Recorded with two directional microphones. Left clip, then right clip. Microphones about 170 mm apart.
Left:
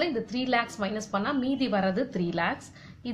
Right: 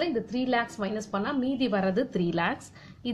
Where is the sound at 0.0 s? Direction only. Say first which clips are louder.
Even; 25° right (ahead or behind).